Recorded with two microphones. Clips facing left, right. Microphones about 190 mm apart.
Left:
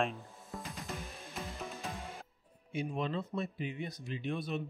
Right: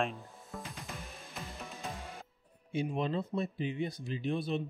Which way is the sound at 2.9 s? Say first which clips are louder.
Right 2 dB; 35° right (ahead or behind).